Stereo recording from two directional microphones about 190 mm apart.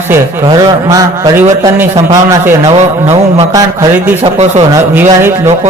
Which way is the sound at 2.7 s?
35° right (ahead or behind).